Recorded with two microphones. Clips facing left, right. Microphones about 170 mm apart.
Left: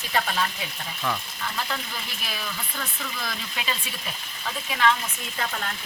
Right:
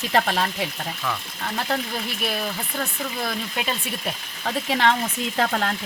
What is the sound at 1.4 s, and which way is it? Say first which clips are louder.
Speech: right 6 dB; 45° right (ahead or behind).